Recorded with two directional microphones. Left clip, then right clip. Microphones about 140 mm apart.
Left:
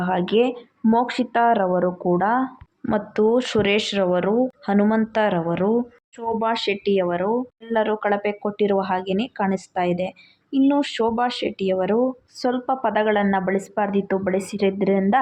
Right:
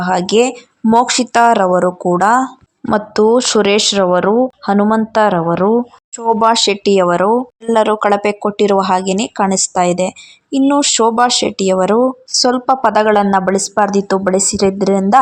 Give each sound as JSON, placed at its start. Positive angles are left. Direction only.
{"t": 0.0, "sound": "speech", "side_deg": -35}